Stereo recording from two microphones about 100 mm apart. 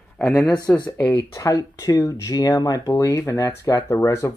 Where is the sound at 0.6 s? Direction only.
40° left (ahead or behind).